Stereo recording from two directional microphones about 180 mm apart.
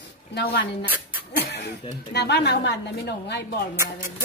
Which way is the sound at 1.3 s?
65° left (ahead or behind).